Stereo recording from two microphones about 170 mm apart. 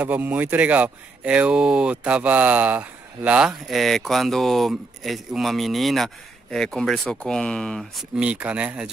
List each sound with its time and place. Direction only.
0.0 s speech: 10° right (ahead or behind)